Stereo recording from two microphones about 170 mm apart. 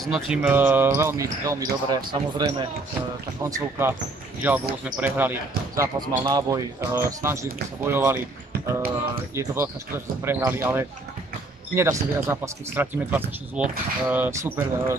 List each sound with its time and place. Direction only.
0.0 s speech: 5° right (ahead or behind)
5.8 s speech: 20° right (ahead or behind)
9.3 s speech: 15° right (ahead or behind)